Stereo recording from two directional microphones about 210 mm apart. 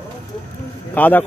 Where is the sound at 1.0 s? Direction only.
10° left (ahead or behind).